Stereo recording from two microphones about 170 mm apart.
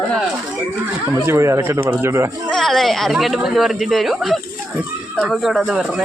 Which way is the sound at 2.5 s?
Centre (ahead or behind).